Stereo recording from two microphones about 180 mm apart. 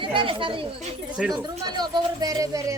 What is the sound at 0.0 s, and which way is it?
Speech, 30° right (ahead or behind).